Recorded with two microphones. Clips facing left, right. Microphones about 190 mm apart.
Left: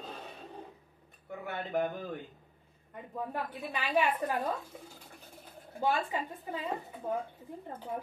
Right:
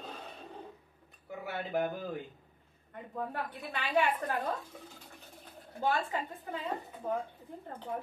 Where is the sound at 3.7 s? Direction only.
10° left (ahead or behind).